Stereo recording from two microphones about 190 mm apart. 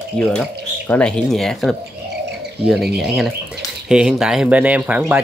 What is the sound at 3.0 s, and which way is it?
Speech, centre (ahead or behind).